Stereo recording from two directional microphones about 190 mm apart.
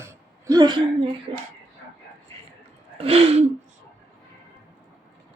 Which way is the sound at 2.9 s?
30° right (ahead or behind).